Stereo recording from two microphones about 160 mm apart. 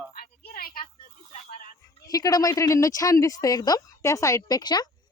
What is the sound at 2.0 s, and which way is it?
Speech, 20° left (ahead or behind).